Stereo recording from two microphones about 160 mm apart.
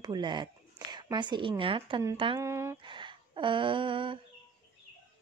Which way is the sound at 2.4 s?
15° right (ahead or behind).